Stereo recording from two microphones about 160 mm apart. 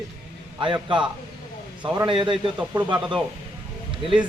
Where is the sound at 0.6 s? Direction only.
30° right (ahead or behind).